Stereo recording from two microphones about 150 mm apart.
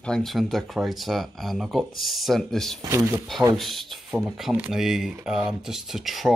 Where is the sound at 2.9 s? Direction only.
20° right (ahead or behind).